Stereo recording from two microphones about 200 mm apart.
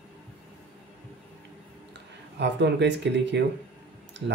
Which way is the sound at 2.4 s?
60° right (ahead or behind).